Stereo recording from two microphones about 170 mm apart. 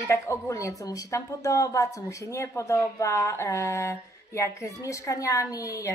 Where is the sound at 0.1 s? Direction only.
15° left (ahead or behind).